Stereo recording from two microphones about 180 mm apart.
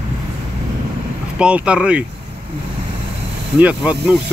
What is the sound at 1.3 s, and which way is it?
Speech, 5° right (ahead or behind).